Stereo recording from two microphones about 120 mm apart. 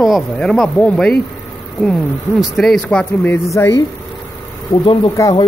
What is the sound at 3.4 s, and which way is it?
Speech, 25° left (ahead or behind).